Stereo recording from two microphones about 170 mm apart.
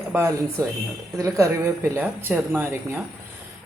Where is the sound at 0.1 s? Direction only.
15° right (ahead or behind).